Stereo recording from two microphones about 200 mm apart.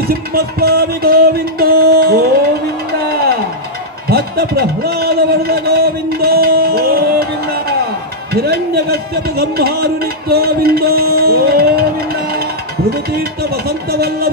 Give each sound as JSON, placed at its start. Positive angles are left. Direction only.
{"t": 0.0, "sound": "music", "side_deg": -50}
{"t": 2.9, "sound": "a sound", "side_deg": -50}
{"t": 8.3, "sound": "a man's voice", "side_deg": -50}
{"t": 12.9, "sound": "music", "side_deg": -50}